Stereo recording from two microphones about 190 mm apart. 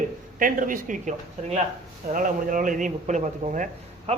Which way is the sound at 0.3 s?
45° right (ahead or behind).